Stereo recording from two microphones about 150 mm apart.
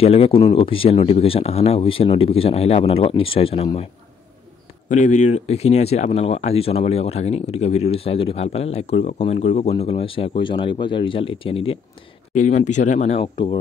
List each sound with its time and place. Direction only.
0.0 s speech: 40° left (ahead or behind)
4.8 s speech: 55° left (ahead or behind); by 11.8 s 40° left (ahead or behind)
12.4 s speech: 55° left (ahead or behind); by 13.6 s 35° left (ahead or behind)